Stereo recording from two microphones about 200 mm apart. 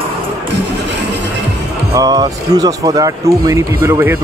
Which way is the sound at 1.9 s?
20° right (ahead or behind).